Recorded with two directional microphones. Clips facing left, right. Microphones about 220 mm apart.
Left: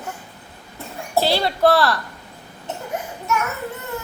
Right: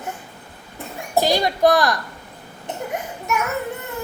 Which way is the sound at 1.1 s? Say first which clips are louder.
Right 1 dB; 15° right (ahead or behind).